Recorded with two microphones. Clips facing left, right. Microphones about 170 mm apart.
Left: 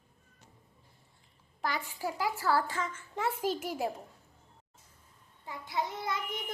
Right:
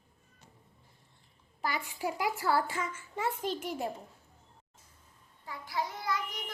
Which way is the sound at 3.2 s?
5° left (ahead or behind).